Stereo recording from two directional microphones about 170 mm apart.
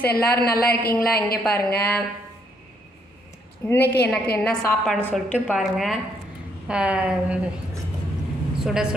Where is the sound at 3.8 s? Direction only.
75° left (ahead or behind).